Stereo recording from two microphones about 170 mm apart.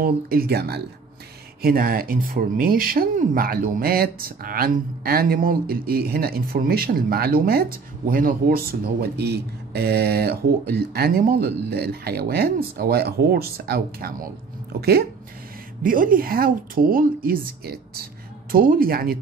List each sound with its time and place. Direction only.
0.0 s speech: 60° right (ahead or behind)
1.6 s speech: 60° right (ahead or behind)
15.8 s speech: 55° right (ahead or behind)